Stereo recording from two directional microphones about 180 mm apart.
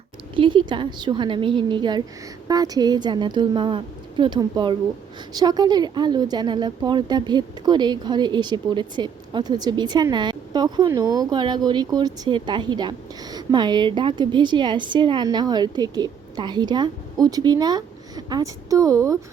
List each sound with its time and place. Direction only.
0.3 s speech: 25° right (ahead or behind)